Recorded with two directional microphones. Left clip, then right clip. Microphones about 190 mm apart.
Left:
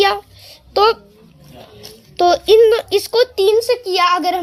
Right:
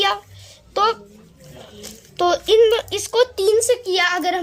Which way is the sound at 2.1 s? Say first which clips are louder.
Left 5 dB; 20° left (ahead or behind).